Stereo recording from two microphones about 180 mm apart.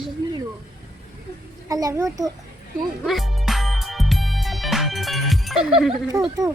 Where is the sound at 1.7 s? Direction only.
20° right (ahead or behind).